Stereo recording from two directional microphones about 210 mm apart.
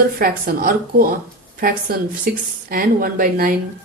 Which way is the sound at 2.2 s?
45° right (ahead or behind).